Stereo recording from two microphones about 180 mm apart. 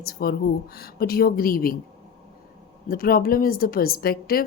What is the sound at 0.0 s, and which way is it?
Speech, 60° left (ahead or behind).